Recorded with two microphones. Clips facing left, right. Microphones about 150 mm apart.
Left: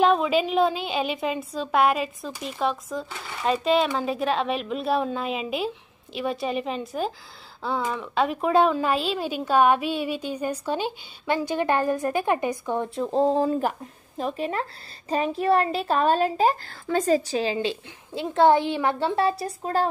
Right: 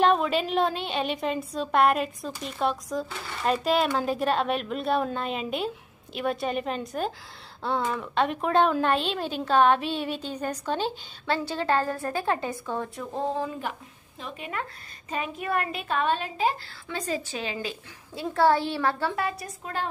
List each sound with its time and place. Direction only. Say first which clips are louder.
0.0 s a woman's voice: left 2 dB; centre (ahead or behind); by 13.2 s 25° left (ahead or behind)
13.2 s speech: left 8 dB; 35° left (ahead or behind)